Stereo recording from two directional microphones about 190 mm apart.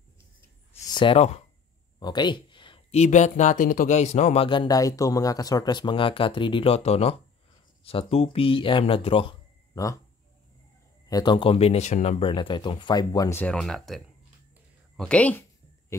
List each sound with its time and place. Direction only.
0.9 s speech: 30° left (ahead or behind)
11.1 s speech: 20° left (ahead or behind)